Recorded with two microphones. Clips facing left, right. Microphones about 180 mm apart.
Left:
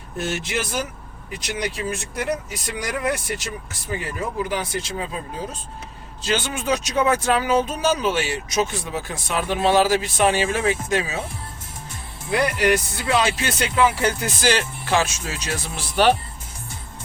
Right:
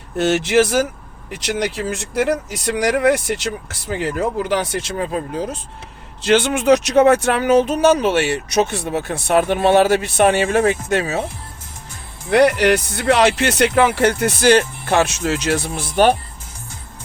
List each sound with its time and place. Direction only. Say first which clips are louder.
0.2 s speech: right 11 dB; 75° right (ahead or behind); by 5.5 s 60° right (ahead or behind)
6.2 s speech: right 9 dB; 70° right (ahead or behind)
12.3 s speech: right 6 dB; 75° right (ahead or behind); by 16.1 s 50° right (ahead or behind)